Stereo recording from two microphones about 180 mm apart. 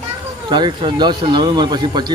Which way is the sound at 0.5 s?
25° right (ahead or behind).